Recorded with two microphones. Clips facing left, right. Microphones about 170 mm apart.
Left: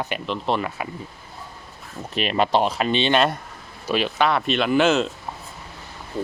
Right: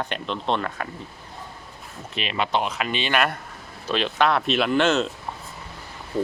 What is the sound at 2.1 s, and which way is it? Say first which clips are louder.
Speech: left 5 dB; 45° left (ahead or behind).